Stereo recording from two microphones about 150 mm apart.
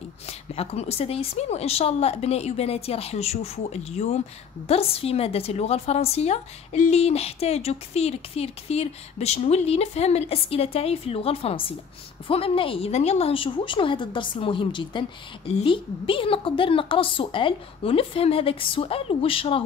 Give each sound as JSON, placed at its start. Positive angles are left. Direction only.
{"t": 0.3, "sound": "a woman's voice", "side_deg": 45}